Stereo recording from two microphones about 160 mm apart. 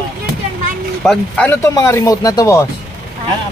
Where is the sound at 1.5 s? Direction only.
20° left (ahead or behind).